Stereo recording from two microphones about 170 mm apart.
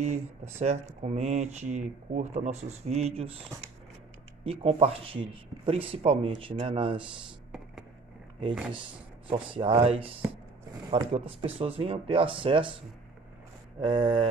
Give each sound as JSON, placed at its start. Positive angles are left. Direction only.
{"t": 0.6, "sound": "speech", "side_deg": -40}
{"t": 4.5, "sound": "speech", "side_deg": -35}
{"t": 9.3, "sound": "speech", "side_deg": -30}
{"t": 13.7, "sound": "a sound", "side_deg": -30}